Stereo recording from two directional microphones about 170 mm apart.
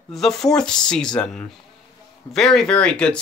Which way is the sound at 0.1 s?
Centre (ahead or behind).